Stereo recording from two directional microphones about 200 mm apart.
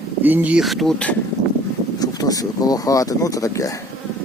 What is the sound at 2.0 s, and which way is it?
Speech, 20° left (ahead or behind).